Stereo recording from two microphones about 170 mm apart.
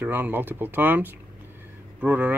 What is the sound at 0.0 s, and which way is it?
Speech, 10° right (ahead or behind).